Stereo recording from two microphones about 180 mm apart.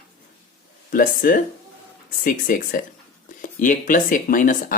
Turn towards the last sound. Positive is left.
turn(degrees=50)  # may be behind; listen again after turning